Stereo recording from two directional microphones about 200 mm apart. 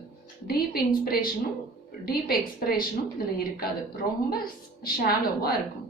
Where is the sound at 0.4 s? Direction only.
50° left (ahead or behind).